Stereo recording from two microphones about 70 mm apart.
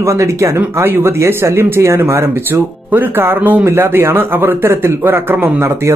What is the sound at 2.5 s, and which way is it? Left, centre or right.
Speech, right.